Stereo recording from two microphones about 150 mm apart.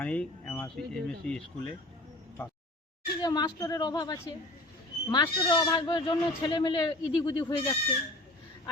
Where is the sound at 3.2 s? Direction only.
25° left (ahead or behind).